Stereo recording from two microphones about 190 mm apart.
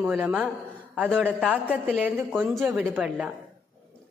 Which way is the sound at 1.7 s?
5° right (ahead or behind).